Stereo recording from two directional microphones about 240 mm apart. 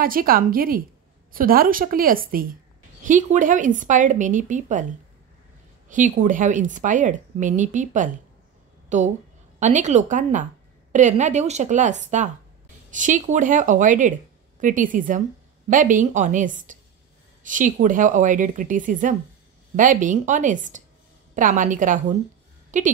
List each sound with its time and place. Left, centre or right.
0.0 s speech: right
5.9 s speech: right
8.8 s a sound: right
9.6 s a woman's voice: right